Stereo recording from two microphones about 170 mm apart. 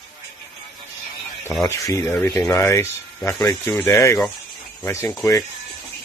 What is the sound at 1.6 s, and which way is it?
Speech, 15° left (ahead or behind).